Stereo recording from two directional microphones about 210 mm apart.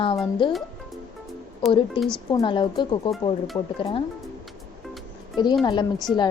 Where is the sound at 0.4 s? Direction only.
20° left (ahead or behind).